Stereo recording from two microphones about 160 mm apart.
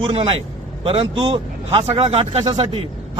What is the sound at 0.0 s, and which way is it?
A man's voice, 35° right (ahead or behind).